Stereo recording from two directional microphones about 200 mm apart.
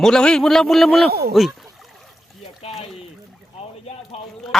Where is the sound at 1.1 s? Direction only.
50° right (ahead or behind).